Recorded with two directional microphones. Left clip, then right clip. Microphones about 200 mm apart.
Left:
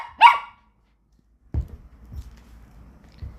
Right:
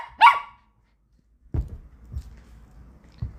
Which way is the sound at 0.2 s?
10° left (ahead or behind).